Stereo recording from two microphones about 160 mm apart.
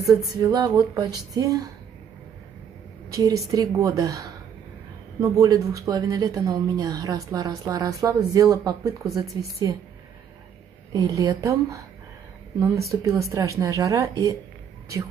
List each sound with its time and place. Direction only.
0.0 s speech: 25° right (ahead or behind)
3.1 s speech: 20° right (ahead or behind)
10.9 s speech: 20° right (ahead or behind)
12.8 s speech: 20° right (ahead or behind)